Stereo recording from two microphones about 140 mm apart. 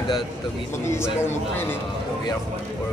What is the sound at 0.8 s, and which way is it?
Speech, 20° left (ahead or behind).